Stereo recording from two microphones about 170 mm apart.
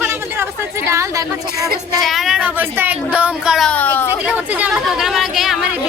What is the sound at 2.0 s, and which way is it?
Speech, centre (ahead or behind).